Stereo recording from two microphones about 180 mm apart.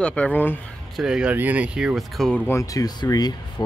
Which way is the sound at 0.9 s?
5° right (ahead or behind).